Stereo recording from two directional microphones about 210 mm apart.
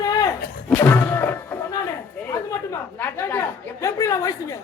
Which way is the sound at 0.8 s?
10° left (ahead or behind).